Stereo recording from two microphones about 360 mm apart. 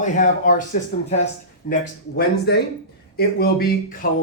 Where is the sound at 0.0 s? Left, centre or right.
Left.